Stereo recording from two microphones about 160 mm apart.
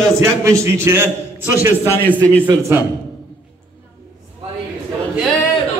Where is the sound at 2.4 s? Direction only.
15° right (ahead or behind).